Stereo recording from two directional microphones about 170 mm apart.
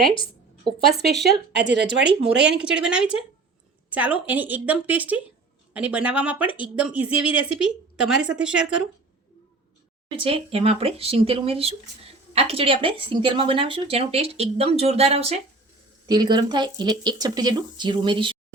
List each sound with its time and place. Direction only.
1.6 s speech: 90° right
2.4 s a woman's voice: 5° right (ahead or behind)
10.2 s speech: 35° right (ahead or behind)
16.0 s speech: 25° right (ahead or behind)